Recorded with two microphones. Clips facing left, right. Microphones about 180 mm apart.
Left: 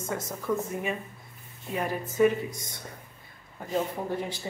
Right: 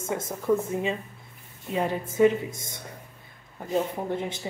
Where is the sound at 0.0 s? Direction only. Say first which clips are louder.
Right 3 dB; 25° right (ahead or behind).